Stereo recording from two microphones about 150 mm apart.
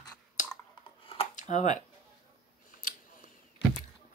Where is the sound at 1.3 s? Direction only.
55° left (ahead or behind).